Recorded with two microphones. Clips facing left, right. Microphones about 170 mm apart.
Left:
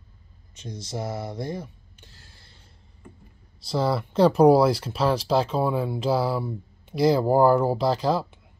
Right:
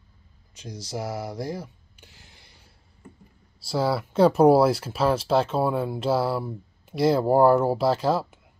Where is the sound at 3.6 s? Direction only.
5° right (ahead or behind).